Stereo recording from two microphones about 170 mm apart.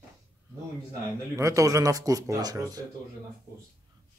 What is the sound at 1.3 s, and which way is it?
Speech, 20° right (ahead or behind).